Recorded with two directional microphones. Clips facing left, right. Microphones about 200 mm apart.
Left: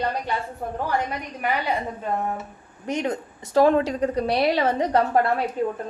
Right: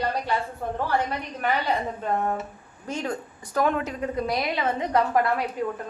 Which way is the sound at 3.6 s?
30° left (ahead or behind).